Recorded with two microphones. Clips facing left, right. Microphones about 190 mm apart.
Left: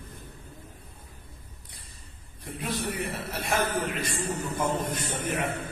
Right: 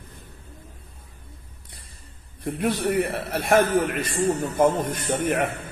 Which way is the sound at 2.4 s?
65° right (ahead or behind).